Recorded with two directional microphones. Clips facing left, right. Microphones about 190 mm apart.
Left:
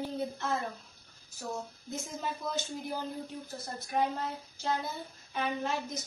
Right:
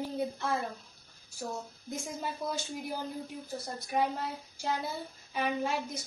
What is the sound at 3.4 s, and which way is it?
Speech, 10° right (ahead or behind).